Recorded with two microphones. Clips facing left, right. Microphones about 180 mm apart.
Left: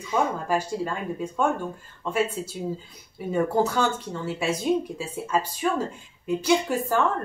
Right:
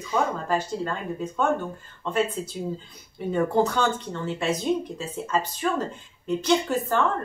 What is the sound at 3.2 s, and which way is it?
Speech, 5° left (ahead or behind).